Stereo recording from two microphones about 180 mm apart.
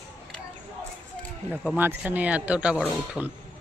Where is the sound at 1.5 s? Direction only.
5° right (ahead or behind).